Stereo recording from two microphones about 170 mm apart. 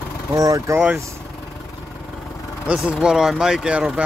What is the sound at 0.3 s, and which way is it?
Speech, 20° right (ahead or behind).